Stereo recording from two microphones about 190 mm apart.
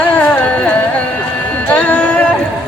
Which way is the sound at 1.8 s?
10° left (ahead or behind).